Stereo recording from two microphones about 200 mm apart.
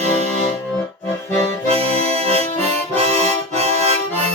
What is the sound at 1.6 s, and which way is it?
Accordion, 30° right (ahead or behind).